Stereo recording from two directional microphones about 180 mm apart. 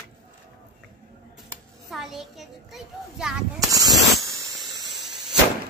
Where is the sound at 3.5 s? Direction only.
20° right (ahead or behind).